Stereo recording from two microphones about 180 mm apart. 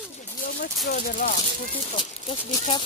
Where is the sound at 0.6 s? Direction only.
50° left (ahead or behind).